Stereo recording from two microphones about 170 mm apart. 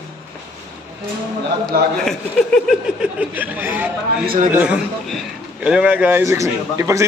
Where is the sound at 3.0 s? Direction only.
10° right (ahead or behind).